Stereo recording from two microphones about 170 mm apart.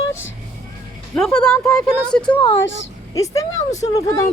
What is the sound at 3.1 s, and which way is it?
Speech, 20° left (ahead or behind).